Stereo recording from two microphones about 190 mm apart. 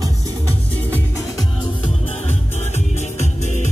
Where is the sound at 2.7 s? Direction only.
35° left (ahead or behind).